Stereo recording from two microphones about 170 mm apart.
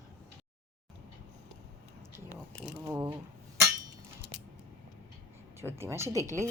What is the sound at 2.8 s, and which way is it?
Speech, 20° right (ahead or behind).